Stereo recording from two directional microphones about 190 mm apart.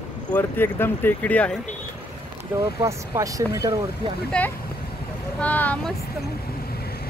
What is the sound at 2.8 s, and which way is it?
Speech, 15° right (ahead or behind).